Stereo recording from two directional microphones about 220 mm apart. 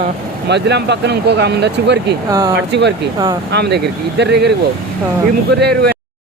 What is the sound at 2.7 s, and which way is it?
Speech, 50° right (ahead or behind).